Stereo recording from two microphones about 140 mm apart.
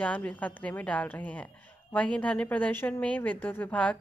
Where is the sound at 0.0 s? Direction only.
10° left (ahead or behind).